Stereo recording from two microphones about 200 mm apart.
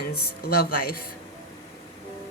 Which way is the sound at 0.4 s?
50° left (ahead or behind).